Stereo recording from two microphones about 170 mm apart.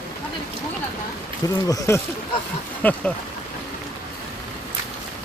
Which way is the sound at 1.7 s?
15° left (ahead or behind).